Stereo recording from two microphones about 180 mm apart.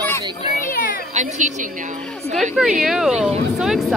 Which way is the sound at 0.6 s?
50° left (ahead or behind).